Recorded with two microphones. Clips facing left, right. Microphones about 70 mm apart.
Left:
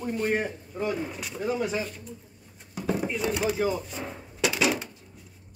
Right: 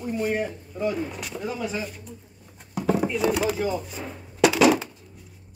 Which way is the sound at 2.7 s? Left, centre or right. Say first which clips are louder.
Right 5 dB; right.